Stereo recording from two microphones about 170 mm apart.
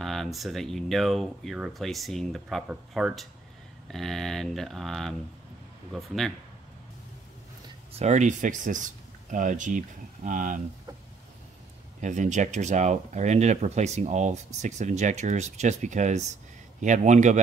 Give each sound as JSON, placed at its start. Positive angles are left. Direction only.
{"t": 0.0, "sound": "speech", "side_deg": 0}
{"t": 7.9, "sound": "speech", "side_deg": -40}
{"t": 12.0, "sound": "speech", "side_deg": -45}